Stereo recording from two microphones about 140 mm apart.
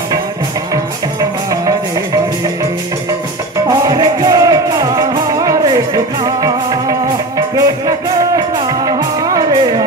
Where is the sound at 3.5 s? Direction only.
25° right (ahead or behind).